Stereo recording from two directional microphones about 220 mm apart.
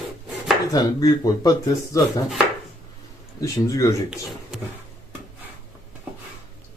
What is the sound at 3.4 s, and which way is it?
Speech, 15° left (ahead or behind).